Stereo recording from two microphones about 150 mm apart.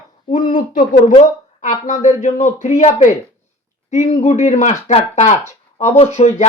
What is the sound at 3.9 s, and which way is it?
Speech, 50° left (ahead or behind).